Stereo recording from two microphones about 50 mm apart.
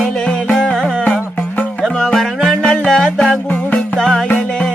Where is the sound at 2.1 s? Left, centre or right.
Centre.